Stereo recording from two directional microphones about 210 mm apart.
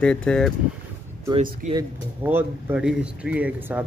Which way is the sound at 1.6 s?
35° right (ahead or behind).